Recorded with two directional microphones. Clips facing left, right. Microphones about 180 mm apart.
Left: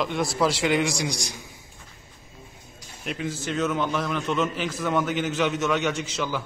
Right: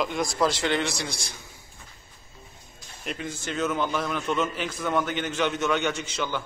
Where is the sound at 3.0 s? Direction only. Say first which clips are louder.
Left 3 dB; centre (ahead or behind).